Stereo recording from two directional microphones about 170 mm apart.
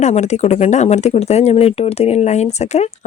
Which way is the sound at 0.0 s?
45° left (ahead or behind).